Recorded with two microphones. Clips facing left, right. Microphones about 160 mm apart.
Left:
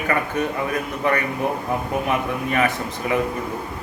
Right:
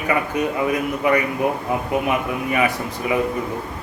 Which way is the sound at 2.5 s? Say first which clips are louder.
Right 1 dB; 15° right (ahead or behind).